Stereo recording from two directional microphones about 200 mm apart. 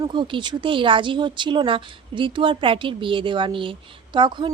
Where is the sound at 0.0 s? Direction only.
25° right (ahead or behind).